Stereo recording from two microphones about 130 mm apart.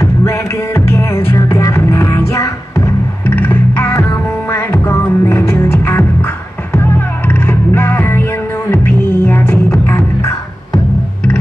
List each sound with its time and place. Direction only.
0.0 s music: 20° left (ahead or behind)